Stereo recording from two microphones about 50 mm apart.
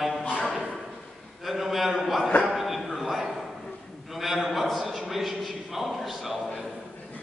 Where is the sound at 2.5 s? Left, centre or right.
Centre.